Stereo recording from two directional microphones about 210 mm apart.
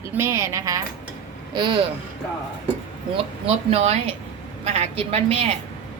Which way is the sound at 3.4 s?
30° right (ahead or behind).